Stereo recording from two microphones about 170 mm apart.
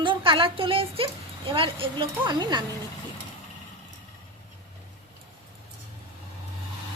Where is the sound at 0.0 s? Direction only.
30° right (ahead or behind).